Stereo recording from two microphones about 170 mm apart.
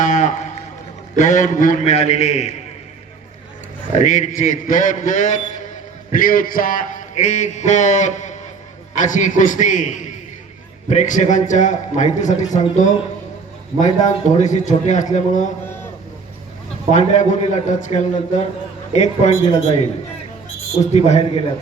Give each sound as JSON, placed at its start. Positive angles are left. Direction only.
{"t": 0.0, "sound": "run", "side_deg": 45}
{"t": 1.1, "sound": "a man's voice", "side_deg": 45}
{"t": 3.9, "sound": "a man's voice", "side_deg": 45}
{"t": 13.8, "sound": "a man's voice", "side_deg": 45}
{"t": 16.9, "sound": "a man's voice", "side_deg": 45}
{"t": 20.9, "sound": "a man's voice", "side_deg": 40}